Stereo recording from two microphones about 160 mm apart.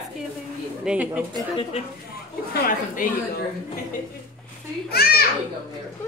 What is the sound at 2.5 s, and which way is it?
Speech, 60° left (ahead or behind).